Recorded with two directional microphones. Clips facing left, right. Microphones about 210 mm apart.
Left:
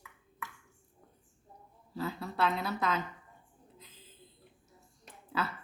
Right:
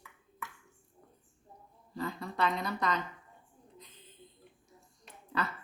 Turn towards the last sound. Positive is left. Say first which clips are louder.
# even
turn(degrees=5)  # may be behind; listen again after turning